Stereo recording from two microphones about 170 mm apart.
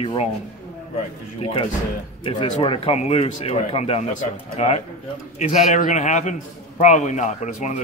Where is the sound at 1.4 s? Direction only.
35° left (ahead or behind).